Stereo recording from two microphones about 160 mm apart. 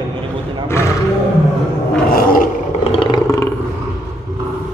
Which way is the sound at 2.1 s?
60° left (ahead or behind).